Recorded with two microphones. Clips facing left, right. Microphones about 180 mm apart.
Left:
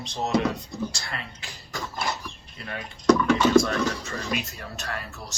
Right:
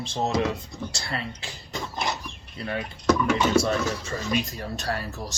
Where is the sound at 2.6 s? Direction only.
30° right (ahead or behind).